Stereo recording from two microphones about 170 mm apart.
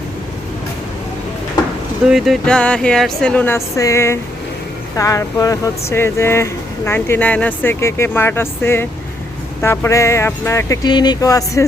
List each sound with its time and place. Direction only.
2.0 s speech: centre (ahead or behind); by 11.6 s 20° left (ahead or behind)